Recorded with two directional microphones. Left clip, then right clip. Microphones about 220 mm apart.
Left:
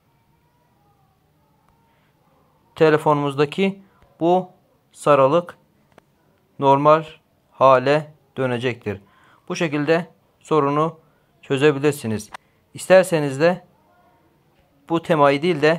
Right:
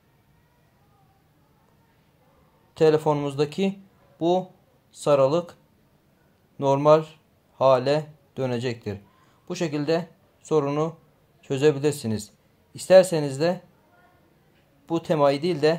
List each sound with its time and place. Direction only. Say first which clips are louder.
2.7 s speech: left 4 dB; 15° left (ahead or behind)
6.6 s speech: left 4 dB; 15° left (ahead or behind)
14.9 s speech: left 5 dB; 15° left (ahead or behind)